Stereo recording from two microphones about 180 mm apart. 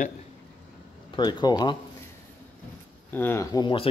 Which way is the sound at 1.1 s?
25° left (ahead or behind).